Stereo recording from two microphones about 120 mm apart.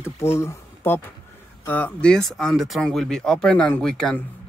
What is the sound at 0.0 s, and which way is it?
Speech, 20° left (ahead or behind).